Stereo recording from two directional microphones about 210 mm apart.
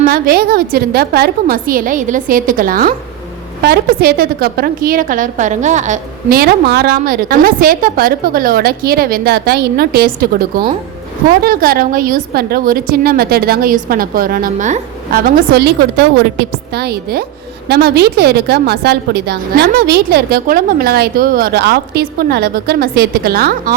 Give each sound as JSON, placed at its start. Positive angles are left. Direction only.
{"t": 0.1, "sound": "a woman's voice", "side_deg": -45}